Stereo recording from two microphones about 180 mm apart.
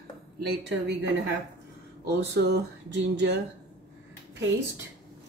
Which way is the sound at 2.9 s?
75° right (ahead or behind).